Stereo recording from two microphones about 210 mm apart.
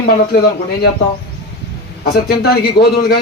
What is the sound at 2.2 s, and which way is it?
Speech, 50° left (ahead or behind).